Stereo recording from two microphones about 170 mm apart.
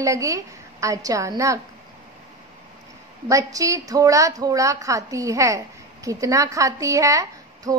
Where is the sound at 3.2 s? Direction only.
20° right (ahead or behind).